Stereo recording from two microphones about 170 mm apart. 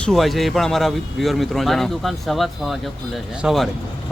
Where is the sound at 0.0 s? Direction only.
Centre (ahead or behind).